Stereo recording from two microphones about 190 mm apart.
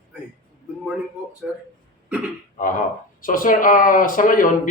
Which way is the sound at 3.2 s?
45° left (ahead or behind).